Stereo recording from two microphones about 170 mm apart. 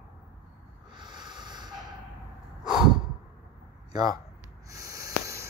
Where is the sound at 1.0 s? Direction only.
25° right (ahead or behind).